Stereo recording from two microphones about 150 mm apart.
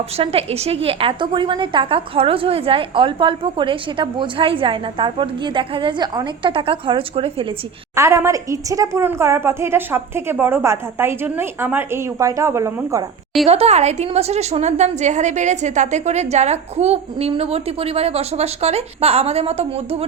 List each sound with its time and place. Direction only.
0.2 s a woman's voice: 40° right (ahead or behind)
7.9 s a woman's voice: 20° right (ahead or behind)
13.5 s a woman's voice: 45° right (ahead or behind)